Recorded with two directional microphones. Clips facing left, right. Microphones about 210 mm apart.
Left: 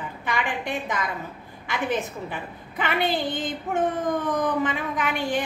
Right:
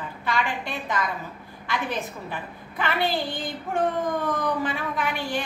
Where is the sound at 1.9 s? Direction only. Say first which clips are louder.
Left 3 dB; 20° left (ahead or behind).